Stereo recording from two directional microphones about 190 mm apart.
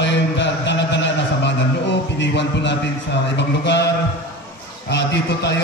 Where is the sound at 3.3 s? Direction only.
65° left (ahead or behind).